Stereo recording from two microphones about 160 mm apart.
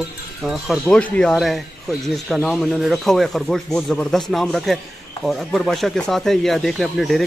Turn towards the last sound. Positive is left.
turn(degrees=0)  # may be behind; listen again after turning